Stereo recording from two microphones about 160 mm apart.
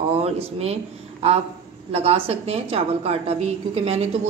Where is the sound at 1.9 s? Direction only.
40° right (ahead or behind).